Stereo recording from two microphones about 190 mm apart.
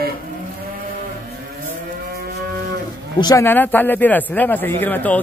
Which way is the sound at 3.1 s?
20° left (ahead or behind).